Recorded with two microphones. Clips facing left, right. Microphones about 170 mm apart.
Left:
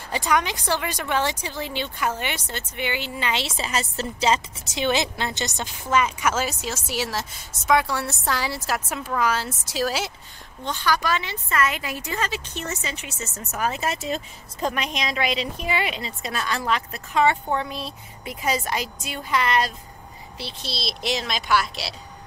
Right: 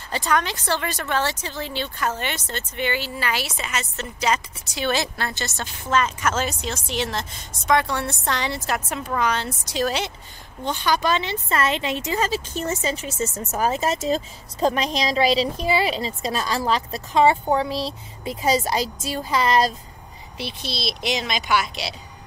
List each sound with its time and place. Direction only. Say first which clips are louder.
0.1 s speech: even; 15° left (ahead or behind)
10.7 s a woman's voice: right 2 dB; 20° right (ahead or behind)
12.2 s speech: right 5 dB; 35° right (ahead or behind)
20.7 s speech: right 1 dB; centre (ahead or behind)